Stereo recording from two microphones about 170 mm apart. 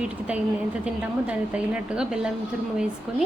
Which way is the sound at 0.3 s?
5° right (ahead or behind).